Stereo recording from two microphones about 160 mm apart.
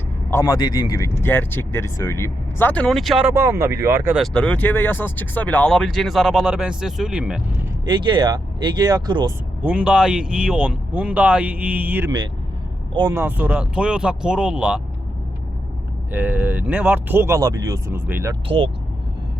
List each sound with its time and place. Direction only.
0.3 s speech: 20° left (ahead or behind); by 3.2 s centre (ahead or behind)
3.3 s speech: 15° right (ahead or behind)
4.1 s speech: 5° left (ahead or behind)
7.9 s speech: 30° right (ahead or behind)
9.6 s speech: 5° right (ahead or behind)
12.9 s speech: 30° right (ahead or behind)
13.1 s speech: 10° right (ahead or behind)
16.1 s speech: 10° right (ahead or behind)
18.4 s speech: 35° right (ahead or behind)